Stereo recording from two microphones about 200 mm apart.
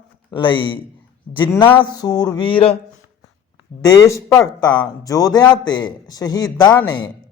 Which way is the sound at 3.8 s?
15° left (ahead or behind).